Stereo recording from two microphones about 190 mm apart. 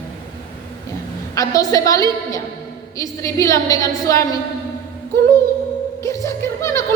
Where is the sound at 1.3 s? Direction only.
20° left (ahead or behind).